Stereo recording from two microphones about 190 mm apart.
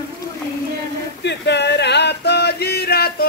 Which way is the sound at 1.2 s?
65° left (ahead or behind).